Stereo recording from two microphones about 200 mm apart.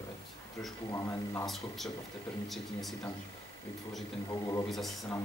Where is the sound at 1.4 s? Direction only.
Centre (ahead or behind).